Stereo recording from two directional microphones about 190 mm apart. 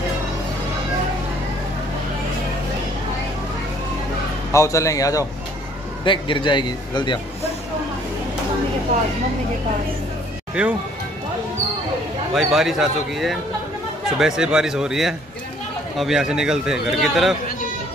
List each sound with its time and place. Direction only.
4.5 s a man's voice: 15° left (ahead or behind)
12.4 s a man's voice: centre (ahead or behind)